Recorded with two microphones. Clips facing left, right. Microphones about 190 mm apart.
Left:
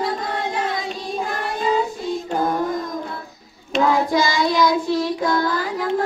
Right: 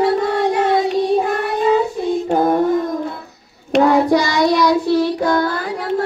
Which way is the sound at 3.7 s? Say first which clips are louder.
Right 6 dB; 70° right (ahead or behind).